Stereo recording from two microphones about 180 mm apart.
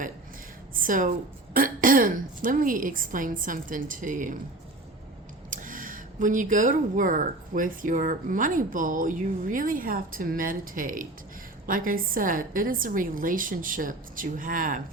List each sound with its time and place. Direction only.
0.7 s a woman's voice: 50° right (ahead or behind)
5.5 s speech: 45° right (ahead or behind)